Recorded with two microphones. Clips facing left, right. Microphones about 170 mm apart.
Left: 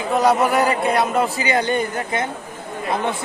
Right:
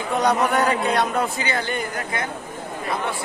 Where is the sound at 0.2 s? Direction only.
Centre (ahead or behind).